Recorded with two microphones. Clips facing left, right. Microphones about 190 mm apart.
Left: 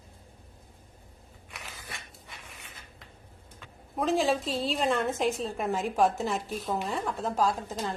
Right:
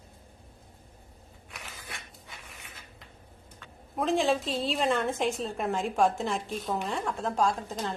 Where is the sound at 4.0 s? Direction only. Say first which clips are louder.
Even; centre (ahead or behind).